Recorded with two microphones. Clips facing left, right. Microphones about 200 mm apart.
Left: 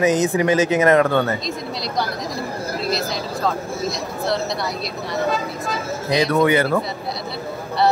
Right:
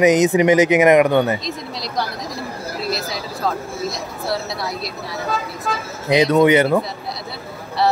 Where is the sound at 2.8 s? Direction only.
Centre (ahead or behind).